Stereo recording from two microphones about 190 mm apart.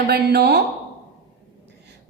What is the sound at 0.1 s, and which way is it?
Speech, 55° right (ahead or behind).